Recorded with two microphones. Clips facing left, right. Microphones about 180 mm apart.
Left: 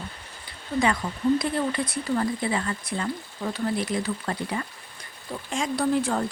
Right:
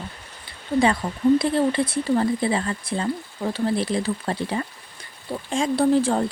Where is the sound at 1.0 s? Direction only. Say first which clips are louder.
Right 5 dB; 20° right (ahead or behind).